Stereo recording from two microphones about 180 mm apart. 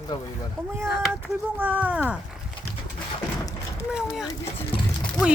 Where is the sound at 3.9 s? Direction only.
5° right (ahead or behind).